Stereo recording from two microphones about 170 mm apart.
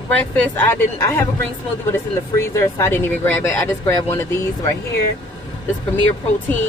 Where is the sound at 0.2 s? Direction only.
10° left (ahead or behind).